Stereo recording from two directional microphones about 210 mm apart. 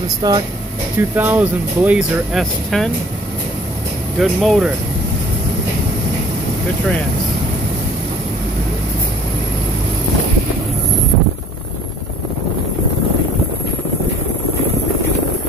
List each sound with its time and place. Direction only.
0.2 s speech: 20° right (ahead or behind)
1.1 s speech: 10° right (ahead or behind)
4.2 s speech: centre (ahead or behind)